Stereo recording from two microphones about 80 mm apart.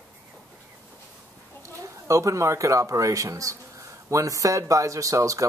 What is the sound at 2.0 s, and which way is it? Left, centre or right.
Speech, right.